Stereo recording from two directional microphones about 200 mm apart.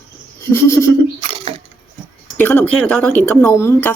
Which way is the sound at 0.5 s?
15° left (ahead or behind).